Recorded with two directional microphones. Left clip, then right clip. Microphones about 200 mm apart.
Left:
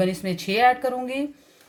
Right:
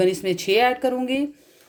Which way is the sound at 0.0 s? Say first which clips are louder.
Right 4 dB; 40° right (ahead or behind).